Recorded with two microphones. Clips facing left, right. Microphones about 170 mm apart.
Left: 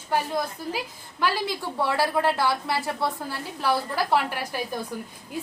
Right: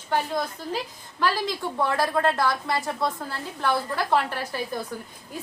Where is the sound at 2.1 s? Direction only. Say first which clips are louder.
Even; 5° left (ahead or behind).